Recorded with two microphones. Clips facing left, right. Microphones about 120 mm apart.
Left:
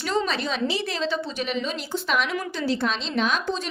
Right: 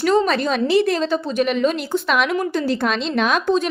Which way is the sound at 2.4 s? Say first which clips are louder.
Right 5 dB; 50° right (ahead or behind).